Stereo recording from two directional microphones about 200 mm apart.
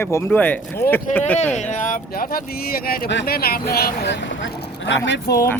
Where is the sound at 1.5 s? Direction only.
40° left (ahead or behind); by 5.3 s 60° left (ahead or behind).